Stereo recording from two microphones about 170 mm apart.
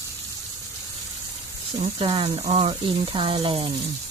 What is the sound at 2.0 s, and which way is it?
Speech, 30° right (ahead or behind).